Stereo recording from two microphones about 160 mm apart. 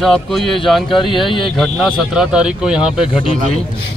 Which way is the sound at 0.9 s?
30° left (ahead or behind).